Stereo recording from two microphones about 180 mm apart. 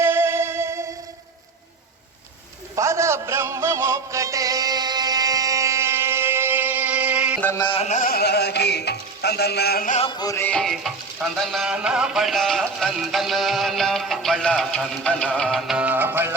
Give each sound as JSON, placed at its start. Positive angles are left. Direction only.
{"t": 0.0, "sound": "music", "side_deg": -10}
{"t": 2.7, "sound": "music", "side_deg": -15}
{"t": 7.6, "sound": "music", "side_deg": 35}
{"t": 10.0, "sound": "music", "side_deg": 25}